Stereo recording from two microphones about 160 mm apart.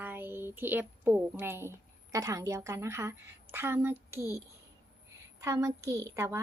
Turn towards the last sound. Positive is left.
turn(degrees=-15)  # may be behind; listen again after turning